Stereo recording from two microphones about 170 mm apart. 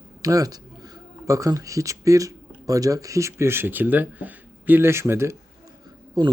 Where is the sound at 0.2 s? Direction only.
20° right (ahead or behind).